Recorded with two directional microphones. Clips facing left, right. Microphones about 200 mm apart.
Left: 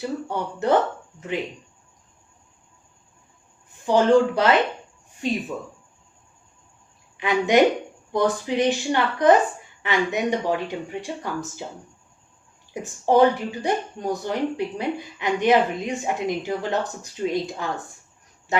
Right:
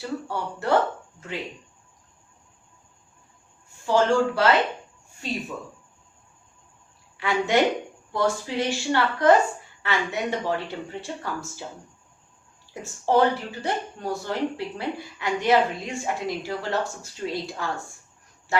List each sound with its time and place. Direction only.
0.0 s speech: 20° left (ahead or behind)
3.8 s speech: 20° left (ahead or behind)
7.2 s speech: 20° left (ahead or behind)
12.7 s speech: 15° left (ahead or behind)